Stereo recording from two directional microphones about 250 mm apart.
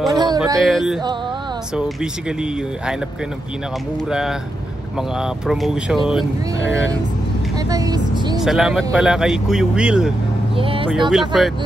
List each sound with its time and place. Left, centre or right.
0.1 s a sound: centre
0.6 s speech: centre
4.1 s speech: centre
6.6 s speech: left
7.7 s speech: centre
8.4 s speech: centre
10.6 s speech: right
10.9 s speech: centre